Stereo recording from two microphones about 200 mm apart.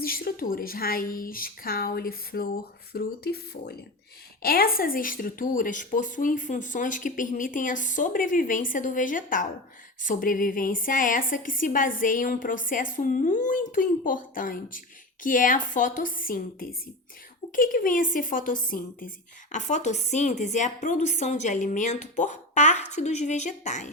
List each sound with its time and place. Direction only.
0.0 s a woman's voice: 50° left (ahead or behind)